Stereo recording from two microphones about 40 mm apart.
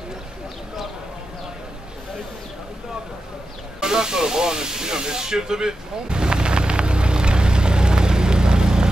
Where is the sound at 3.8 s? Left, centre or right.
Centre.